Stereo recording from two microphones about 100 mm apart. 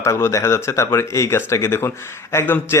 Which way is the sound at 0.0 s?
30° left (ahead or behind).